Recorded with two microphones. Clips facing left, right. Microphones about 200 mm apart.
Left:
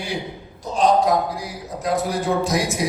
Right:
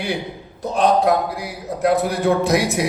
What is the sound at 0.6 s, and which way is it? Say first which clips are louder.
A man's voice: right 1 dB; 60° right (ahead or behind).